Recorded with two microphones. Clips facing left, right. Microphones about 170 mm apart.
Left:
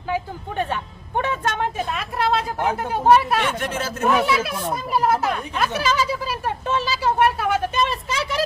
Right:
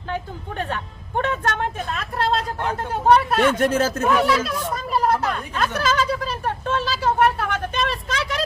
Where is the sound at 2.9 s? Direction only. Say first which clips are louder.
Even; 10° left (ahead or behind).